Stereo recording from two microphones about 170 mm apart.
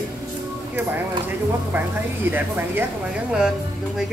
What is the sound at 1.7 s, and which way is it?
Speech, 10° right (ahead or behind).